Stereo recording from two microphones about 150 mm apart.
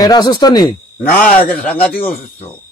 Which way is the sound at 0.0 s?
25° left (ahead or behind).